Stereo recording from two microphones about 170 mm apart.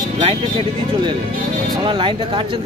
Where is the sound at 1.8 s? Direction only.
30° right (ahead or behind).